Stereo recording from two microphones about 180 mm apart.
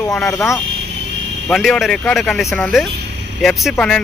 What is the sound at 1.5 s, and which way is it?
Speech, centre (ahead or behind).